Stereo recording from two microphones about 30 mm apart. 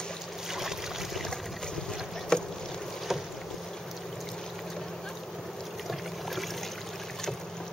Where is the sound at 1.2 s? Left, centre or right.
Centre.